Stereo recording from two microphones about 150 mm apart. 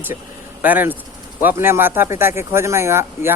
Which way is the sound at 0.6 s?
10° right (ahead or behind).